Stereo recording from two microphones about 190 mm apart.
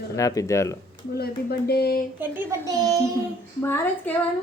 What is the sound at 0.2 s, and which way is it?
Speech, 15° left (ahead or behind).